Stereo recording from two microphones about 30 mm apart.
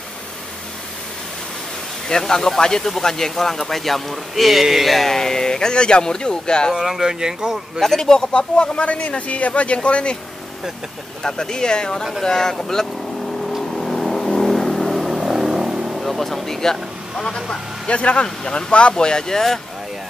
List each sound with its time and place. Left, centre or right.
2.0 s speech: left; by 5.1 s centre
5.1 s speech: centre
6.8 s speech: centre
8.0 s speech: left
11.2 s speech: left
13.7 s vehicle: centre
15.1 s vehicle: centre
16.0 s speech: centre
17.2 s speech: left
17.8 s speech: left
18.2 s speech: left
18.9 s speech: left